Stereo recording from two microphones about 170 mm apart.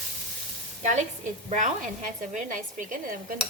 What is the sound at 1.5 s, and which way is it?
Speech, 45° right (ahead or behind).